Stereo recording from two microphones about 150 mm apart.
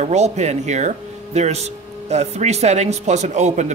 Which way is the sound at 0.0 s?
50° right (ahead or behind).